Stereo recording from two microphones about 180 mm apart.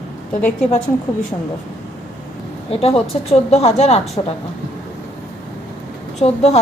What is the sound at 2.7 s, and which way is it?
Speech, 35° left (ahead or behind).